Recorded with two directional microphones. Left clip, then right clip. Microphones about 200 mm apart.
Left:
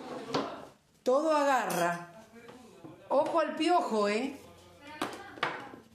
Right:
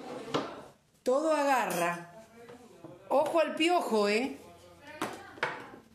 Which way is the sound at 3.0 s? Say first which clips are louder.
Right 1 dB; 25° right (ahead or behind).